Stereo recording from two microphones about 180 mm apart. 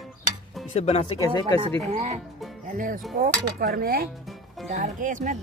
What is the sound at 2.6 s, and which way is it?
Music, 50° right (ahead or behind).